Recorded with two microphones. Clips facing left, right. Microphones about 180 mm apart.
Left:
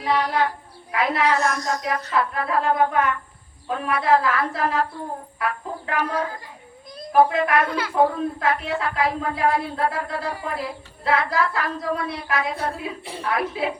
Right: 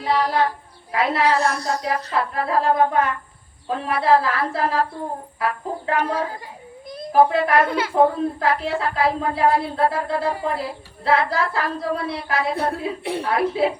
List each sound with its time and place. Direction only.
0.0 s a child's voice: 30° right (ahead or behind)
13.0 s a woman's voice: 65° right (ahead or behind)
13.2 s a woman's voice: 30° right (ahead or behind)